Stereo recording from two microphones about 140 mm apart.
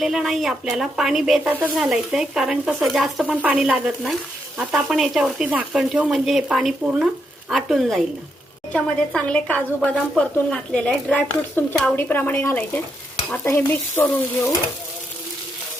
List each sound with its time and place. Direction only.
0.0 s speech: centre (ahead or behind); by 14.5 s 20° left (ahead or behind)